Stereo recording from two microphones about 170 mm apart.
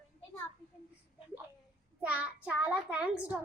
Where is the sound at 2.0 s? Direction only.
10° right (ahead or behind).